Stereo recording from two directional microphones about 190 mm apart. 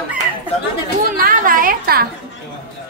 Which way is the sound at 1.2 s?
50° right (ahead or behind).